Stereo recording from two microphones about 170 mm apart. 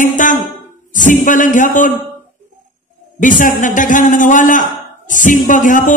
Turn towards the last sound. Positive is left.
turn(degrees=50)  # may be behind; listen again after turning